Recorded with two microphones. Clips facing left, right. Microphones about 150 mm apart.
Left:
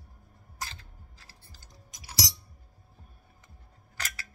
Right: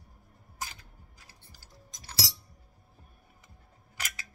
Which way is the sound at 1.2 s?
15° right (ahead or behind).